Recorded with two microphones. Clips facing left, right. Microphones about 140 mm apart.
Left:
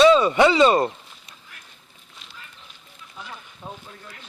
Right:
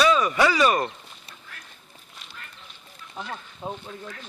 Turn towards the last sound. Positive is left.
turn(degrees=-25)  # may be behind; listen again after turning